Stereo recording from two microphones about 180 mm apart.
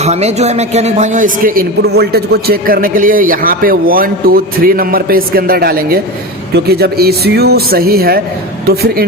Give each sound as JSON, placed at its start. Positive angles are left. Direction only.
{"t": 0.0, "sound": "a woman's voice", "side_deg": -35}